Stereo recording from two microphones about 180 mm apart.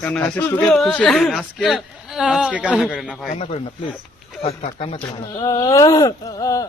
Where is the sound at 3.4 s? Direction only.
35° left (ahead or behind).